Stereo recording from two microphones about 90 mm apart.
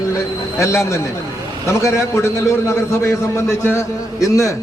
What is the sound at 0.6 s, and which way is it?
A man's voice, 35° left (ahead or behind).